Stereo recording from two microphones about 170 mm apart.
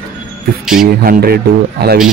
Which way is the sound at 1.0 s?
60° right (ahead or behind).